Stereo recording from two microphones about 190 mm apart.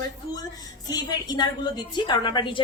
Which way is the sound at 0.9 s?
20° left (ahead or behind).